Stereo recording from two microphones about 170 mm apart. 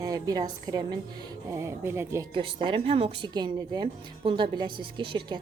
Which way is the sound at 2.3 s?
30° right (ahead or behind).